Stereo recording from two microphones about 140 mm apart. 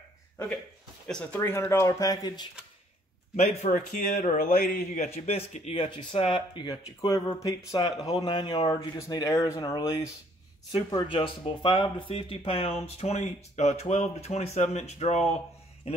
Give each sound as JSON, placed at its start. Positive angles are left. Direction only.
{"t": 1.0, "sound": "speech", "side_deg": 5}
{"t": 3.3, "sound": "speech", "side_deg": 50}
{"t": 3.7, "sound": "a man's voice", "side_deg": 70}
{"t": 5.9, "sound": "speech", "side_deg": 35}